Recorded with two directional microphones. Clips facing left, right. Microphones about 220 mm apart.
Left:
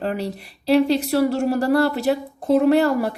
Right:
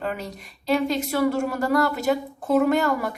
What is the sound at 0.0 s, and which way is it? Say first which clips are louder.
Speech: left 5 dB; 35° left (ahead or behind).